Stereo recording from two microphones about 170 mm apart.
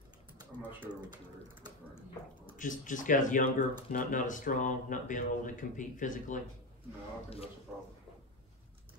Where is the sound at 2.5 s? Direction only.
50° left (ahead or behind).